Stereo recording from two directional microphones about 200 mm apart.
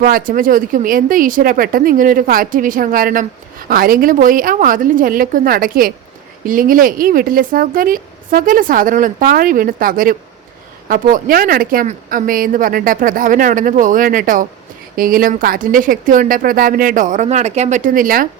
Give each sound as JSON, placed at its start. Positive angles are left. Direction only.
{"t": 0.0, "sound": "speech", "side_deg": -45}